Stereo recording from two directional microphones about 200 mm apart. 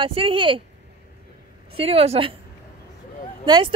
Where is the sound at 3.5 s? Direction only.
25° right (ahead or behind).